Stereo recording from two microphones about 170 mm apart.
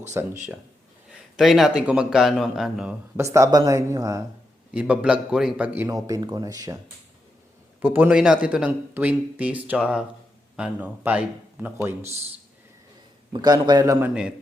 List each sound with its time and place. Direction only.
0.1 s a man's voice: 15° right (ahead or behind)
1.4 s speech: centre (ahead or behind)
3.2 s speech: 15° right (ahead or behind)
4.7 s a man's voice: 5° right (ahead or behind)
5.9 s speech: 20° right (ahead or behind)
7.8 s a man's voice: 10° right (ahead or behind)
13.3 s speech: 25° right (ahead or behind)
14.1 s speech: 5° right (ahead or behind)